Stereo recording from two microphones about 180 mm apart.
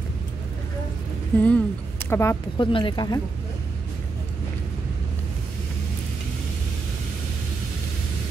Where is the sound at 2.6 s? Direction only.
25° left (ahead or behind).